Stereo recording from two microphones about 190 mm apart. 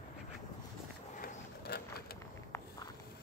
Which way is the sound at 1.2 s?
55° left (ahead or behind).